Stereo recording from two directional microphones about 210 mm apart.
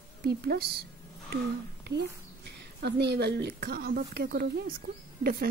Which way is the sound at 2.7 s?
50° right (ahead or behind).